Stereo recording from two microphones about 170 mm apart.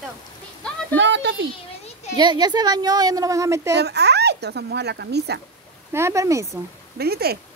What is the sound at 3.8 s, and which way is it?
Speech, 75° right (ahead or behind).